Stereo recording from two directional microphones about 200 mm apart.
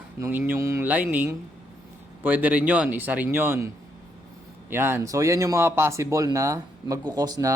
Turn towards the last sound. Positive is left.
turn(degrees=-15)  # may be behind; listen again after turning